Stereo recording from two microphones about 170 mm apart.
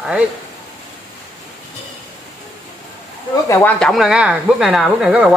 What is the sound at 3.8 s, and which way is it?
Speech, centre (ahead or behind).